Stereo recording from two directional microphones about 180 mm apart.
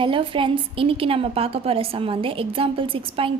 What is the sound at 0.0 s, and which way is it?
A woman's voice, 30° right (ahead or behind).